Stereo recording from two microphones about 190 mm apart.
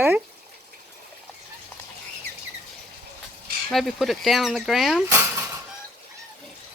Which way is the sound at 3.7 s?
Centre (ahead or behind).